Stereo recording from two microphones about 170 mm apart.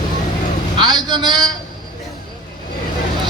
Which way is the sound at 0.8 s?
25° right (ahead or behind).